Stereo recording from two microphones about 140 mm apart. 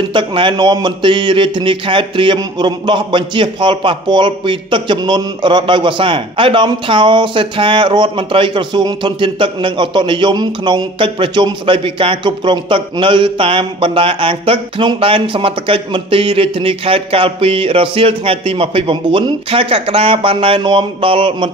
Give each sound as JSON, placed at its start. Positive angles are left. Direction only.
{"t": 0.1, "sound": "speech", "side_deg": -35}